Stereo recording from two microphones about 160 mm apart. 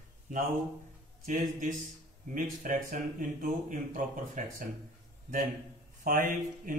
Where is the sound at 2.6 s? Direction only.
55° right (ahead or behind).